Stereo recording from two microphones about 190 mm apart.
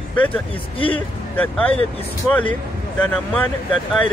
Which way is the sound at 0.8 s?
30° left (ahead or behind).